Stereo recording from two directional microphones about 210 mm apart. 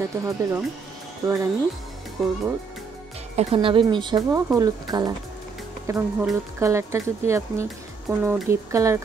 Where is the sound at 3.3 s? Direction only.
25° right (ahead or behind).